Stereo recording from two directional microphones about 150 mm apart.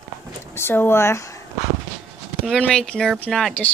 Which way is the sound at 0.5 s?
15° left (ahead or behind).